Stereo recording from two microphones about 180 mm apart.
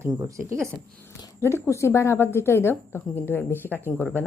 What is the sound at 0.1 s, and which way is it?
Speech, 15° right (ahead or behind).